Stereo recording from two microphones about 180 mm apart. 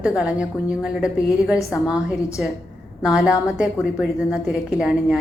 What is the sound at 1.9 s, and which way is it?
A woman's voice, 5° right (ahead or behind).